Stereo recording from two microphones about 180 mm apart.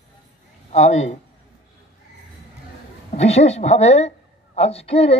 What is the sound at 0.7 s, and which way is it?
Speech, 40° left (ahead or behind).